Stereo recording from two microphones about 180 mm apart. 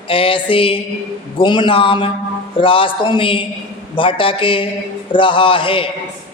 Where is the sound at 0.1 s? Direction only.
30° left (ahead or behind).